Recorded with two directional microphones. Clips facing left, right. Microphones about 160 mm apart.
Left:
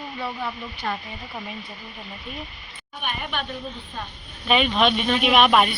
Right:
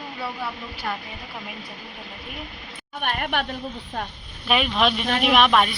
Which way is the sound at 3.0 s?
65° right (ahead or behind).